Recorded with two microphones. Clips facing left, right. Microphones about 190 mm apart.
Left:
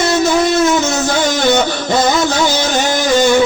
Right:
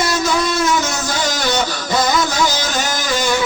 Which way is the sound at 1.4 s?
25° left (ahead or behind).